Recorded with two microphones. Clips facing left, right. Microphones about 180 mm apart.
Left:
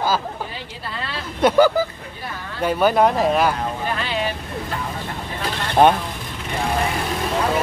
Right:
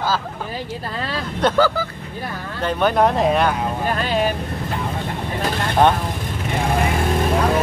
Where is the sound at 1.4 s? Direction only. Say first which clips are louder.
Left 2 dB; 10° left (ahead or behind).